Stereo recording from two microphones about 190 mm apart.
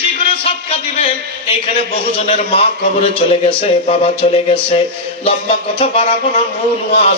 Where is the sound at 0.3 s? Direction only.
30° left (ahead or behind).